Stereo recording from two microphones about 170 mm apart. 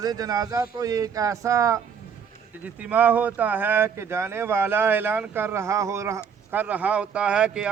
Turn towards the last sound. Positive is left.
turn(degrees=-5)  # may be behind; listen again after turning